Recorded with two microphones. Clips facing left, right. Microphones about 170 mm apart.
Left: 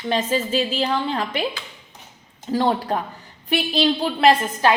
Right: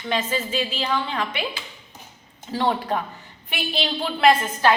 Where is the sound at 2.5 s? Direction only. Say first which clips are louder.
Left 3 dB; 35° left (ahead or behind).